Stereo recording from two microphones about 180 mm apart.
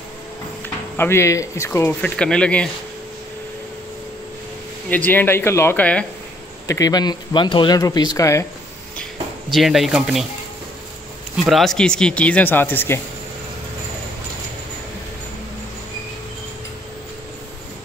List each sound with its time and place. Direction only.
0.9 s speech: 15° left (ahead or behind)
4.8 s speech: 10° left (ahead or behind)
6.7 s speech: 20° left (ahead or behind)
9.5 s speech: centre (ahead or behind)
11.4 s speech: centre (ahead or behind)